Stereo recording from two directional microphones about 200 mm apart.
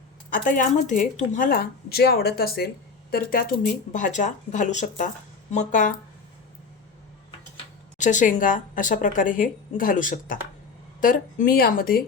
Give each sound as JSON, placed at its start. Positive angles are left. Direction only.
{"t": 0.3, "sound": "a woman's voice", "side_deg": 40}
{"t": 7.3, "sound": "a woman's voice", "side_deg": 35}